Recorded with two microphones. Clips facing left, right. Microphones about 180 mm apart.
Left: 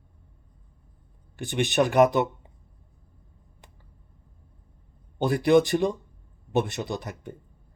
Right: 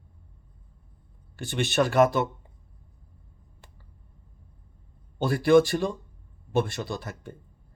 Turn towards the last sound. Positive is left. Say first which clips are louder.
# left 2 dB
turn(degrees=20)  # may be behind; listen again after turning